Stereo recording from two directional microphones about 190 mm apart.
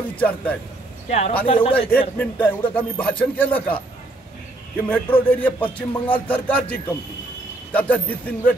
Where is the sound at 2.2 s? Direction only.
10° left (ahead or behind).